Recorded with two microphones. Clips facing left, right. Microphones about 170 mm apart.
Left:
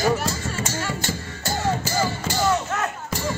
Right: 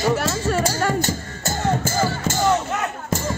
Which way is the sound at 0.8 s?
45° right (ahead or behind).